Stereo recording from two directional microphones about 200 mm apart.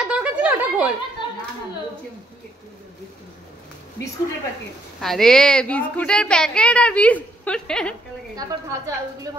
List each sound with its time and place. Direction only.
0.0 s a sound: 5° right (ahead or behind)
5.0 s a woman's voice: centre (ahead or behind)
8.4 s a woman's voice: 15° right (ahead or behind)